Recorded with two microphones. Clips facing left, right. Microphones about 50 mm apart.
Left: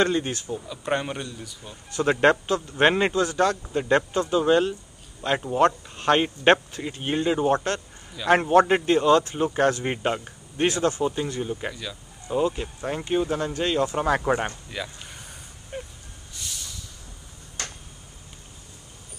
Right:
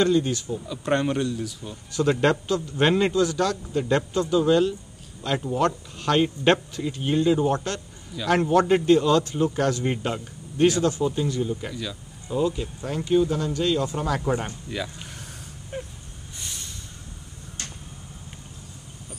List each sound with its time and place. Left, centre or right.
0.0 s speech: left
0.7 s speech: centre
2.1 s a man's voice: left
11.7 s speech: centre
12.3 s a man's voice: left
14.7 s speech: centre
15.7 s a sound: centre
17.6 s tick-tock: left